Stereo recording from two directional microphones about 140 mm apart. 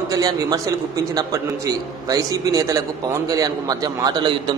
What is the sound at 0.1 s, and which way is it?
A man's voice, 25° right (ahead or behind).